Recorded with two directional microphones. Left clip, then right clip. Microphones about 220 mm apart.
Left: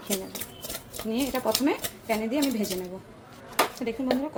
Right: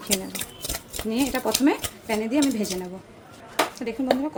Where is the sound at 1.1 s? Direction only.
15° right (ahead or behind).